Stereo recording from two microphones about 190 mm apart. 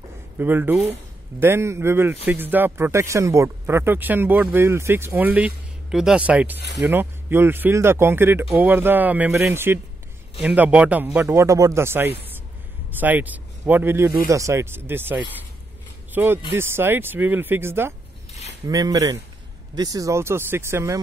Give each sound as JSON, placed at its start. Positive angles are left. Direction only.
{"t": 0.4, "sound": "speech", "side_deg": -10}